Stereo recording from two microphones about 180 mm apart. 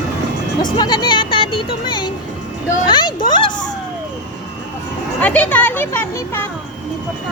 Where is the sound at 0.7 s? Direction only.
25° left (ahead or behind).